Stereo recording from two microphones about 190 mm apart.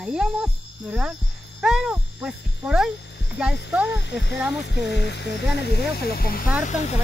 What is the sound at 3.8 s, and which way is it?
Speech, 65° left (ahead or behind).